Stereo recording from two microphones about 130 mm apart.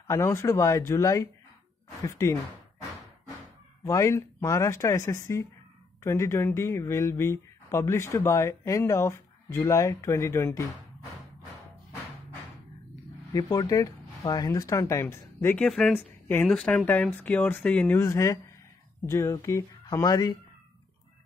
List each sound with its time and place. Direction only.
0.0 s speech: 20° left (ahead or behind)
3.8 s speech: 25° left (ahead or behind)
13.3 s speech: 25° left (ahead or behind)
15.5 s speech: 5° left (ahead or behind)
15.9 s speech: 15° left (ahead or behind)